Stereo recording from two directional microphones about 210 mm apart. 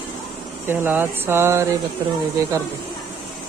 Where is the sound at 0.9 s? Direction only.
10° right (ahead or behind).